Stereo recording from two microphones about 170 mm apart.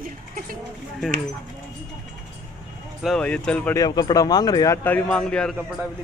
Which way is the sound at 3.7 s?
20° left (ahead or behind).